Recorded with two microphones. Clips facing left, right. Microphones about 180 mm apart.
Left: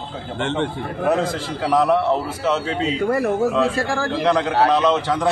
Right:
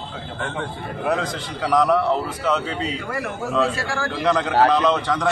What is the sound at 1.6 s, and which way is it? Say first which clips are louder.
A man's voice: left 1 dB; 5° left (ahead or behind).